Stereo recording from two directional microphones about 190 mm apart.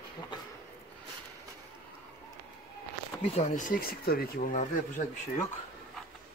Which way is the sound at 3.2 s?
35° left (ahead or behind).